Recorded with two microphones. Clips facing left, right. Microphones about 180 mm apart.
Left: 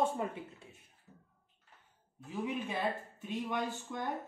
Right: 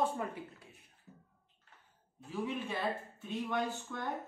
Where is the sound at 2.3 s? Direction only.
20° left (ahead or behind).